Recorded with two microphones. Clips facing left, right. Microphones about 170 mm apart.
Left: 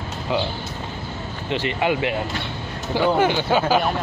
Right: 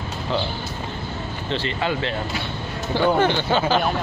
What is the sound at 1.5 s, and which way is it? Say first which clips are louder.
Speech: left 3 dB; 15° left (ahead or behind).